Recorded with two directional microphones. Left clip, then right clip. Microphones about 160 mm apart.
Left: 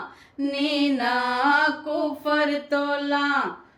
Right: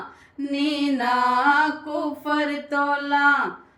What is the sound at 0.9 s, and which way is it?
Mantra, 25° left (ahead or behind).